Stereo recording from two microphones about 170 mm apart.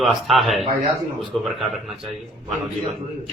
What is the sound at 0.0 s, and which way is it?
A man's voice, centre (ahead or behind).